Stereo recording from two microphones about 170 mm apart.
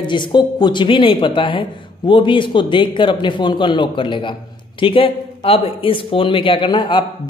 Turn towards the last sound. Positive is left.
turn(degrees=30)  # may be behind; listen again after turning